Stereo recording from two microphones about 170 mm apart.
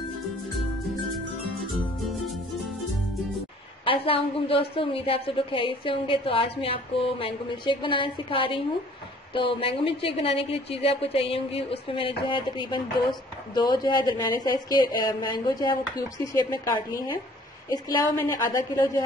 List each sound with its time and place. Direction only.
3.8 s a woman's voice: 30° left (ahead or behind)
17.6 s a woman's voice: 20° left (ahead or behind)